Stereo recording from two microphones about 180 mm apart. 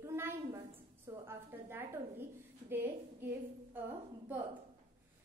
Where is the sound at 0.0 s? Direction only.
15° right (ahead or behind).